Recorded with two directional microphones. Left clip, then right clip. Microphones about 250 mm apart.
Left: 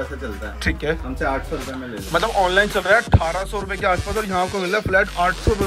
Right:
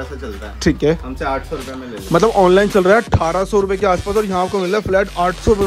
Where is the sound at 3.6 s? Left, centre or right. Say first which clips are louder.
Right 5 dB; centre.